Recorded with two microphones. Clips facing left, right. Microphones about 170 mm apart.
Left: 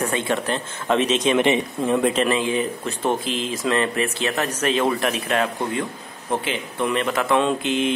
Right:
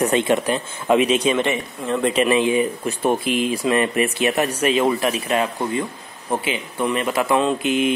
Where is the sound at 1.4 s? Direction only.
15° left (ahead or behind).